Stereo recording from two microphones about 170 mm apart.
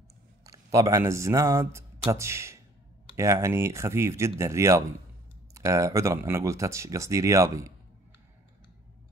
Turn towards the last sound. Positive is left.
turn(degrees=-20)  # may be behind; listen again after turning